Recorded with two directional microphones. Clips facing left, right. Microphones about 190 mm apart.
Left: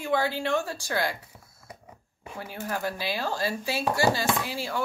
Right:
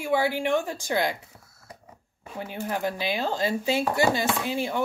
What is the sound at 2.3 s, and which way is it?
Speech, 20° right (ahead or behind).